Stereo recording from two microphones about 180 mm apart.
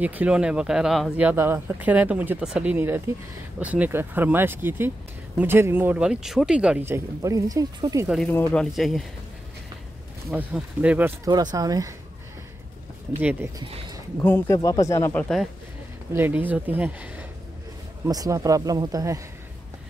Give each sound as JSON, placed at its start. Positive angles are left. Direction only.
{"t": 0.0, "sound": "speech", "side_deg": -10}
{"t": 8.3, "sound": "speech", "side_deg": 10}
{"t": 8.7, "sound": "speech", "side_deg": 0}
{"t": 10.3, "sound": "speech", "side_deg": -5}
{"t": 13.2, "sound": "speech", "side_deg": -10}
{"t": 13.6, "sound": "speech", "side_deg": -25}
{"t": 14.2, "sound": "speech", "side_deg": 15}
{"t": 16.1, "sound": "speech", "side_deg": -10}